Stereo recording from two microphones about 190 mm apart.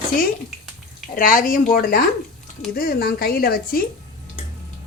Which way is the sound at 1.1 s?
45° left (ahead or behind).